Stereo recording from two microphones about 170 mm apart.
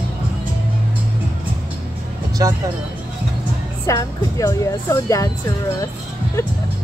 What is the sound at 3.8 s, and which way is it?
Speech, 20° left (ahead or behind).